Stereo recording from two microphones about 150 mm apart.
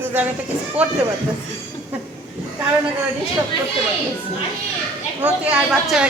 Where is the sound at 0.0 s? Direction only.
10° right (ahead or behind).